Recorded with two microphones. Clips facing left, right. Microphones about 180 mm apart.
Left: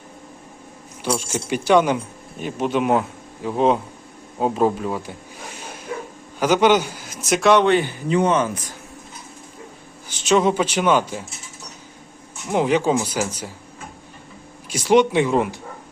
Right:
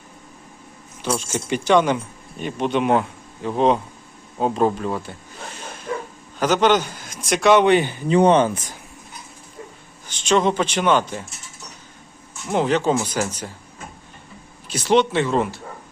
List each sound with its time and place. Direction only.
1.0 s speech: 10° left (ahead or behind)
4.4 s bow-wow: 5° left (ahead or behind)
6.4 s speech: 10° left (ahead or behind)
7.6 s speech: 15° right (ahead or behind)
8.1 s speech: 35° right (ahead or behind)
10.1 s speech: 10° left (ahead or behind)
12.5 s speech: 10° left (ahead or behind)
14.7 s speech: 10° left (ahead or behind)